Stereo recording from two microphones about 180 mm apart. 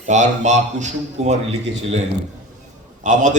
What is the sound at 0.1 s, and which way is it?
Speech, 40° right (ahead or behind).